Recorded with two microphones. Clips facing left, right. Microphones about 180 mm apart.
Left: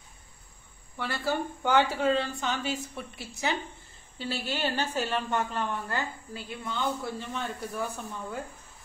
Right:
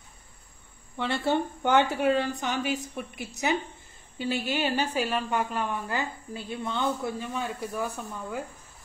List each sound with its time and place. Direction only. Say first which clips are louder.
0.9 s a woman's voice: right 4 dB; 25° right (ahead or behind)
7.3 s a woman's voice: right 2 dB; 10° right (ahead or behind)